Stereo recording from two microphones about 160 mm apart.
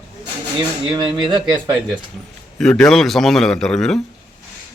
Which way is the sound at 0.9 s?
30° right (ahead or behind).